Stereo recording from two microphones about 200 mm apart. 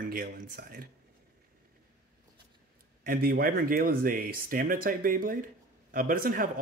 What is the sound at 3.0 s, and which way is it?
Speech, 50° right (ahead or behind).